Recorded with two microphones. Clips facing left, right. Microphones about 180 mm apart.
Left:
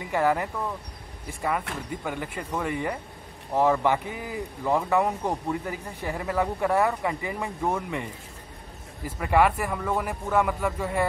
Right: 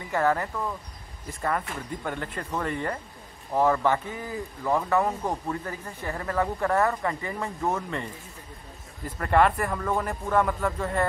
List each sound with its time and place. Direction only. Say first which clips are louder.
0.1 s speech: left 1 dB; 15° left (ahead or behind)
1.9 s speech: left 1 dB; 10° left (ahead or behind)